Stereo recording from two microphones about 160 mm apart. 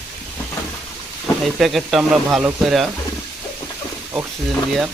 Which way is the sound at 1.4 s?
Centre (ahead or behind).